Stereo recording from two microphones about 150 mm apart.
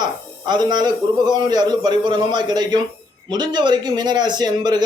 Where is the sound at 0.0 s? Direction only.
30° right (ahead or behind).